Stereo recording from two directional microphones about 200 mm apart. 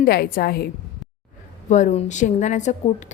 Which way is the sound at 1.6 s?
35° left (ahead or behind).